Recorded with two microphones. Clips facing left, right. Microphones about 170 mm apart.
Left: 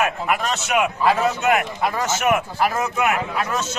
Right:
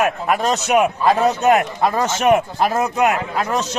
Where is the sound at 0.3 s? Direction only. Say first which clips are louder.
Right 5 dB; 35° right (ahead or behind).